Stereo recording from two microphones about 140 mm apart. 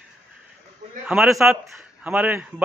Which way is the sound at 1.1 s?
5° right (ahead or behind).